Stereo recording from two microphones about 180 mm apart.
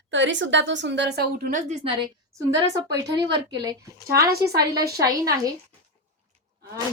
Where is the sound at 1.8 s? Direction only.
30° right (ahead or behind).